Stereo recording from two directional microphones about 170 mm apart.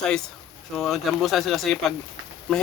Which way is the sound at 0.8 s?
Centre (ahead or behind).